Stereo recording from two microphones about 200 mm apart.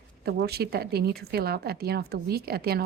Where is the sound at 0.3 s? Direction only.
50° right (ahead or behind).